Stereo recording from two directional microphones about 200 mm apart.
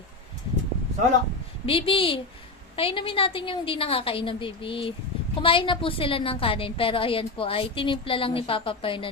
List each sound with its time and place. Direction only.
1.6 s a woman's voice: 25° left (ahead or behind)